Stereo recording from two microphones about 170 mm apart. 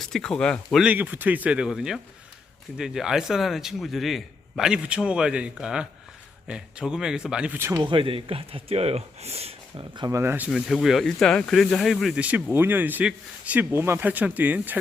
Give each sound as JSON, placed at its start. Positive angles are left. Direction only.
{"t": 0.0, "sound": "a man's voice", "side_deg": 0}
{"t": 7.9, "sound": "speech", "side_deg": -30}
{"t": 10.2, "sound": "speech", "side_deg": -10}